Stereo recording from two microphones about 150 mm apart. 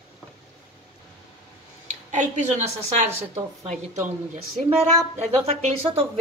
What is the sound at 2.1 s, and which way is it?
Speech, 50° right (ahead or behind).